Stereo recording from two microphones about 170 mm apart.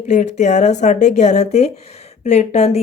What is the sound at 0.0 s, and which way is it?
Speech, 45° left (ahead or behind).